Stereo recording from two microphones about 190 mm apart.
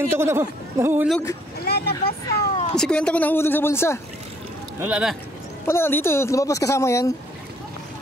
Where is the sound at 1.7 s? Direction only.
55° left (ahead or behind).